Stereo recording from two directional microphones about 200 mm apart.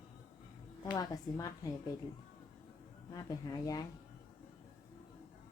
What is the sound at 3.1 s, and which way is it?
Speech, 15° left (ahead or behind).